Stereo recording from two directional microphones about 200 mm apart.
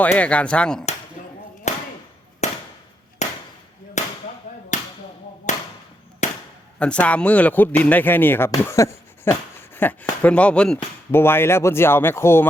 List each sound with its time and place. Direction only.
0.0 s speech: 5° left (ahead or behind)
1.7 s a sound: 35° left (ahead or behind)
2.4 s chop: 35° left (ahead or behind)
4.0 s whip: 35° left (ahead or behind)
5.5 s a sound: 35° left (ahead or behind)
6.7 s speech: 5° left (ahead or behind)